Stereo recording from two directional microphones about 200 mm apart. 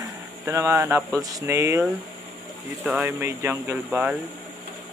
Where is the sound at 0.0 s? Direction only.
15° right (ahead or behind).